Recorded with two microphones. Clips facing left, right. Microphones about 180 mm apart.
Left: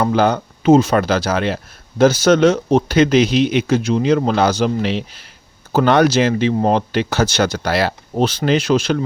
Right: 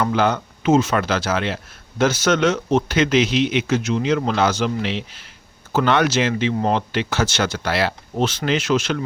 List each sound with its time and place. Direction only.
0.0 s speech: 40° left (ahead or behind)